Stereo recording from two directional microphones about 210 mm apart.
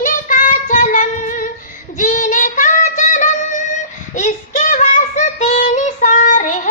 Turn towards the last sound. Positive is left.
turn(degrees=35)  # may be behind; listen again after turning